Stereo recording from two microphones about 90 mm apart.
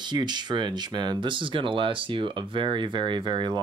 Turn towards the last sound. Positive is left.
turn(degrees=-60)  # may be behind; listen again after turning